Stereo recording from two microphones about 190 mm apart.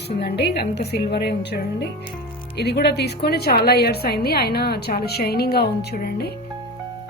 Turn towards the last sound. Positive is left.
turn(degrees=55)  # may be behind; listen again after turning